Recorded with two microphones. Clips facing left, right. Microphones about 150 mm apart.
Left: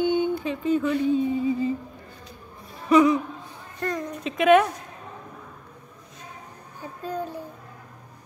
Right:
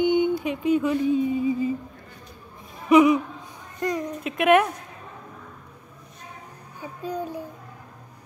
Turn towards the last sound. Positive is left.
turn(degrees=-15)  # may be behind; listen again after turning